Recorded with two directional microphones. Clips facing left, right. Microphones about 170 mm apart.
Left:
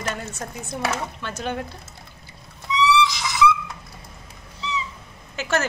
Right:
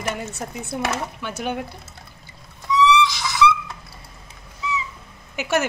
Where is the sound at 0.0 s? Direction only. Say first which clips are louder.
Right 2 dB; 15° right (ahead or behind).